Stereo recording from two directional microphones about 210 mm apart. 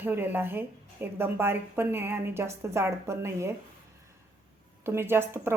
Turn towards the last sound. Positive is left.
turn(degrees=-10)  # may be behind; listen again after turning